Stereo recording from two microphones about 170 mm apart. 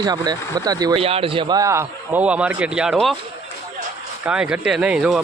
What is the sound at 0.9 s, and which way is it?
A man's voice, 35° right (ahead or behind).